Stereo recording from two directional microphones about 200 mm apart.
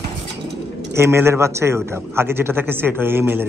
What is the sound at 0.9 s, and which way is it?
A man's voice, 10° right (ahead or behind).